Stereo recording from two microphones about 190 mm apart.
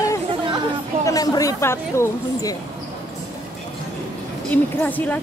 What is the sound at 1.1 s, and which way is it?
Speech, 20° left (ahead or behind).